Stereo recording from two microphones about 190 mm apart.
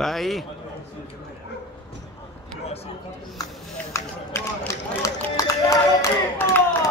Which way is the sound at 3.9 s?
15° left (ahead or behind).